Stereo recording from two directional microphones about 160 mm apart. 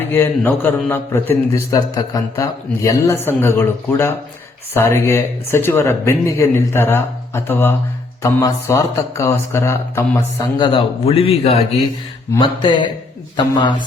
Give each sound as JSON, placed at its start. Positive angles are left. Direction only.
{"t": 0.1, "sound": "a man's voice", "side_deg": 15}
{"t": 10.6, "sound": "a man's voice", "side_deg": 35}
{"t": 13.3, "sound": "a man's voice", "side_deg": 30}